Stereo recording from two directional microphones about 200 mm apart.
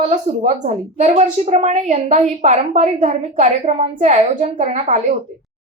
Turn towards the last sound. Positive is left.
turn(degrees=-35)  # may be behind; listen again after turning